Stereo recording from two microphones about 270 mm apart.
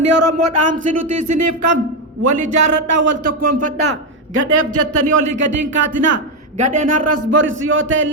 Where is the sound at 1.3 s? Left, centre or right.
Right.